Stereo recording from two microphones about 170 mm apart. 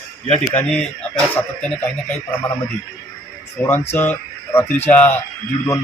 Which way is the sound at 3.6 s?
10° left (ahead or behind).